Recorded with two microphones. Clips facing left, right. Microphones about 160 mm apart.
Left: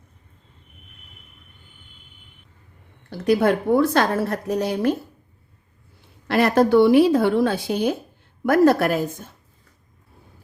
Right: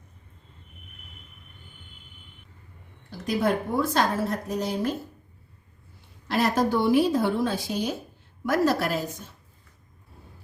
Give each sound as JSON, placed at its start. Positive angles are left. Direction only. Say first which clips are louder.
{"t": 3.1, "sound": "a woman's voice", "louder": "left 7 dB", "side_deg": 70}
{"t": 6.2, "sound": "a woman's voice", "louder": "left 6 dB", "side_deg": 65}